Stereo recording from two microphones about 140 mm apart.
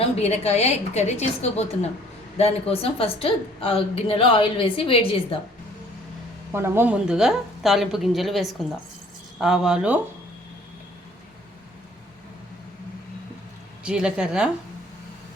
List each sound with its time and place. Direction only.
0.2 s a woman's voice: 50° left (ahead or behind)
6.5 s a woman's voice: 15° right (ahead or behind)
13.8 s a woman's voice: 5° right (ahead or behind)